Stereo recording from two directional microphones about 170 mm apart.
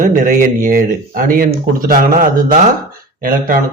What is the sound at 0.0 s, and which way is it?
Speech, 55° right (ahead or behind).